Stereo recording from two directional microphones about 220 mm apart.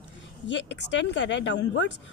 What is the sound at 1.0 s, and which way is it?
Speech, 55° left (ahead or behind).